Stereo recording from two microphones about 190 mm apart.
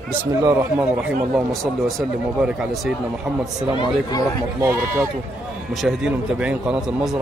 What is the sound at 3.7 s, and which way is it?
Speech, 20° left (ahead or behind).